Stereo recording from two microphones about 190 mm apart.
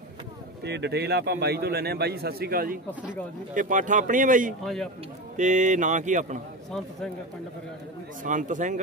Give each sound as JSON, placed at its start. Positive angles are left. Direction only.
{"t": 0.7, "sound": "a man's voice", "side_deg": -60}
{"t": 8.2, "sound": "speech", "side_deg": -45}